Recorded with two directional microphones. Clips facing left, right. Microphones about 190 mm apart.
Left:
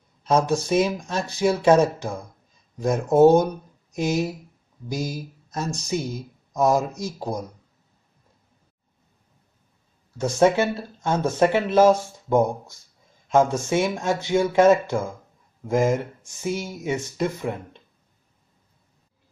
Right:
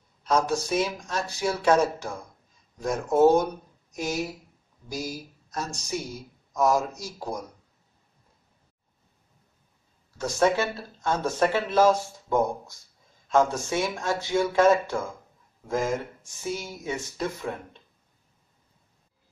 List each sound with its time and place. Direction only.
0.2 s speech: 25° left (ahead or behind)
10.1 s speech: 25° left (ahead or behind)
16.3 s speech: 20° left (ahead or behind)